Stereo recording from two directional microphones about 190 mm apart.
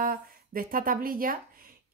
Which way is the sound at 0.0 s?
50° right (ahead or behind).